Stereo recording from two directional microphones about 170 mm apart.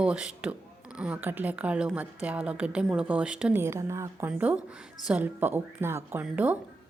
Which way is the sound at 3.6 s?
15° right (ahead or behind).